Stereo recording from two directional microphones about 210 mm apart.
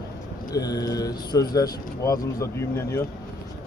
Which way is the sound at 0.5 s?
15° left (ahead or behind).